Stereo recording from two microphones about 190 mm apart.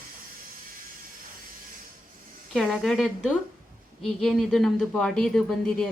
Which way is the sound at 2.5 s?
Centre (ahead or behind).